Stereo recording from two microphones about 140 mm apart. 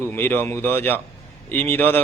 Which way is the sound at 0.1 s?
15° left (ahead or behind).